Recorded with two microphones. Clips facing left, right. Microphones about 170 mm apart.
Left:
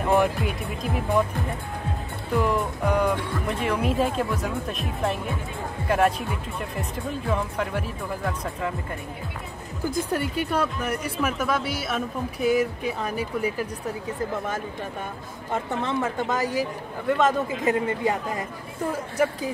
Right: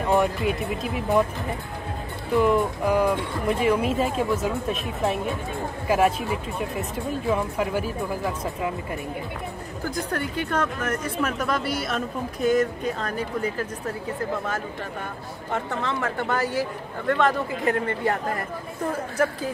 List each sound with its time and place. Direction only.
0.0 s speech: centre (ahead or behind)
2.3 s speech: centre (ahead or behind)
10.1 s speech: 10° left (ahead or behind)
15.5 s speech: 20° left (ahead or behind)